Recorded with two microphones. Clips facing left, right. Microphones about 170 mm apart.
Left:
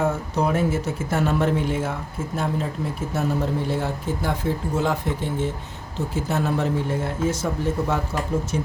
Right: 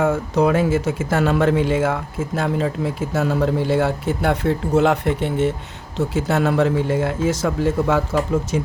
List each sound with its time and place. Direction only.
0.0 s speech: 90° right; by 5.5 s 70° right (ahead or behind)
6.1 s speech: 80° right